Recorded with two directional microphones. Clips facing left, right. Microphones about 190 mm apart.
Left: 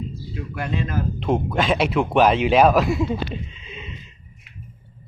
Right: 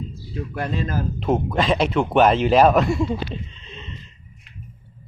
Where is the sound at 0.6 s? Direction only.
35° right (ahead or behind).